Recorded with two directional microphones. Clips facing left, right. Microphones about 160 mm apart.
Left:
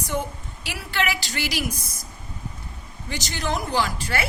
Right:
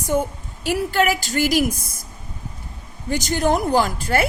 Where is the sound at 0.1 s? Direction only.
45° right (ahead or behind).